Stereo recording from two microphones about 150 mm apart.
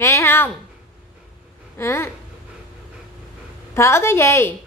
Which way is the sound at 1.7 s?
20° left (ahead or behind).